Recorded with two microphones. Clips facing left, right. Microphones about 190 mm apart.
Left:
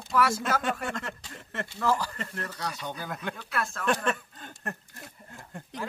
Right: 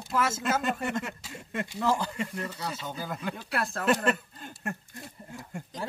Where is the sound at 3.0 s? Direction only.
Centre (ahead or behind).